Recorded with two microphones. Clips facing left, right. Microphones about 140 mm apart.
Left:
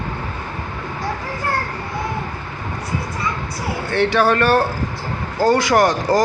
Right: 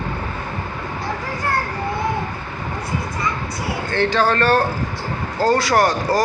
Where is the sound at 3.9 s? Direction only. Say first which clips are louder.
Left 2 dB; 10° left (ahead or behind).